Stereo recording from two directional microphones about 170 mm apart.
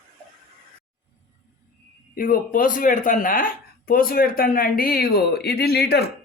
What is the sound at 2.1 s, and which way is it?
Speech, 55° left (ahead or behind).